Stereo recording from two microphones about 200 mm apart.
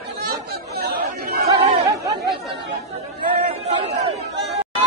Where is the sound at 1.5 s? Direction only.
15° right (ahead or behind).